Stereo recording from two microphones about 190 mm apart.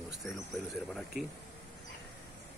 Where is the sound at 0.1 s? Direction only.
Centre (ahead or behind).